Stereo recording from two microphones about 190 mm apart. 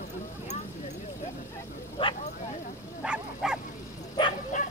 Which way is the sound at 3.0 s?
5° right (ahead or behind).